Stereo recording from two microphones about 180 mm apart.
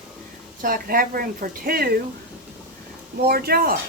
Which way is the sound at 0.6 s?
50° right (ahead or behind).